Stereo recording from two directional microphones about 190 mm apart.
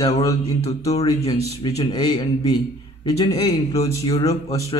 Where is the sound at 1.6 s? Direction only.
20° left (ahead or behind).